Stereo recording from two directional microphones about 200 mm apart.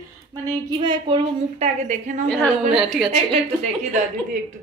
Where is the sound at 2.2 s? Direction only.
5° left (ahead or behind).